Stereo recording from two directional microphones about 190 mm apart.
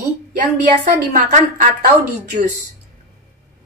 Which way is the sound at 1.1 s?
45° right (ahead or behind).